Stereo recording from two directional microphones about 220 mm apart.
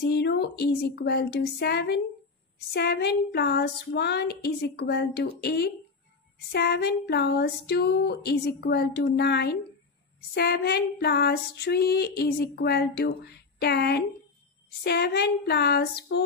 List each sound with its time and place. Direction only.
0.0 s female singing: 50° left (ahead or behind)